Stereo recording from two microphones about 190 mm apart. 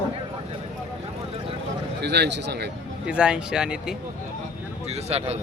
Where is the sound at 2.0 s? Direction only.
65° right (ahead or behind).